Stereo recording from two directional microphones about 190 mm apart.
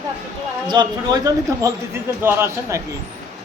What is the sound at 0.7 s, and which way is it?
A man's voice, 20° right (ahead or behind).